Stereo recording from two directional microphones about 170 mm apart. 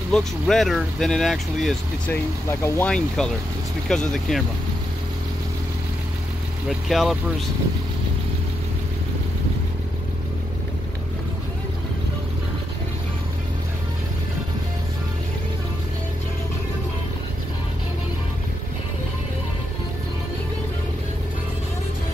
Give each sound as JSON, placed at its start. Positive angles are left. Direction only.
{"t": 0.1, "sound": "speech", "side_deg": 0}
{"t": 6.9, "sound": "speech", "side_deg": 0}